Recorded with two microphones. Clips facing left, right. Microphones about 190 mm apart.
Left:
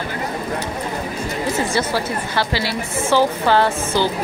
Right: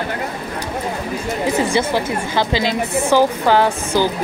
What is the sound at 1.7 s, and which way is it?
Speech, 15° right (ahead or behind).